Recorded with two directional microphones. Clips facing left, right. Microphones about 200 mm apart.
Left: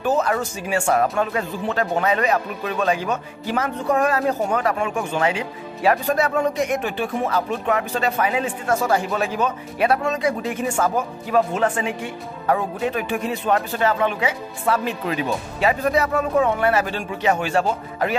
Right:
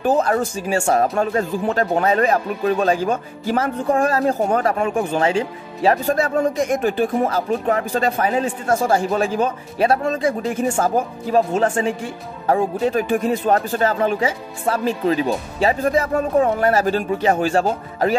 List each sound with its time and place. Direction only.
0.0 s a sound: 35° right (ahead or behind)
0.6 s speech: 40° right (ahead or behind)
6.1 s speech: 45° right (ahead or behind)
13.1 s speech: 50° right (ahead or behind); by 15.9 s 30° right (ahead or behind)
15.9 s speech: 45° right (ahead or behind)